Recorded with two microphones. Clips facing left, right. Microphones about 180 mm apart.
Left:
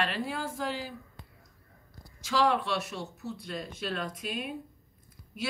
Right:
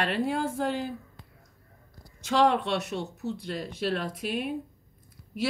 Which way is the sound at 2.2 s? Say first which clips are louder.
Right 3 dB; 60° right (ahead or behind).